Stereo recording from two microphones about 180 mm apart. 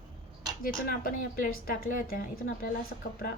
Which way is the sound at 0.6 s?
50° left (ahead or behind).